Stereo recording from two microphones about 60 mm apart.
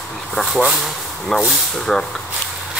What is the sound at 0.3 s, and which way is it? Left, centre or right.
Speech, centre.